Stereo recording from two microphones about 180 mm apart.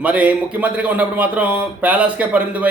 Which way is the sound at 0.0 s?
10° right (ahead or behind).